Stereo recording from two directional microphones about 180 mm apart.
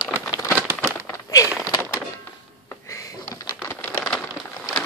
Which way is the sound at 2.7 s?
15° left (ahead or behind).